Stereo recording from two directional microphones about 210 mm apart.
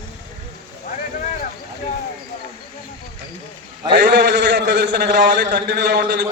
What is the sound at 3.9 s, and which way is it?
A man's voice, 50° right (ahead or behind).